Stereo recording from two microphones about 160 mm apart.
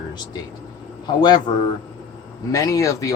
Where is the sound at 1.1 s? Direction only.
25° left (ahead or behind).